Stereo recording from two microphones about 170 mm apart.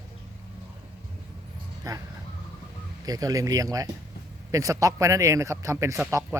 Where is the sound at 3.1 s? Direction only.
20° right (ahead or behind).